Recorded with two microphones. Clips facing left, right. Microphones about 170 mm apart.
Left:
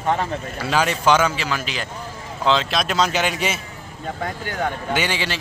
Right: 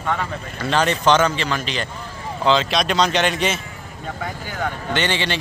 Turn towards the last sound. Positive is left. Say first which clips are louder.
# right 1 dB
turn(degrees=5)  # may be behind; listen again after turning